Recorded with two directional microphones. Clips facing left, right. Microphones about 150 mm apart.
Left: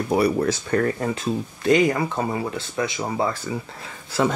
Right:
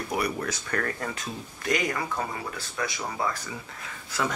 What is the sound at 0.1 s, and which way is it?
Speech, 30° left (ahead or behind).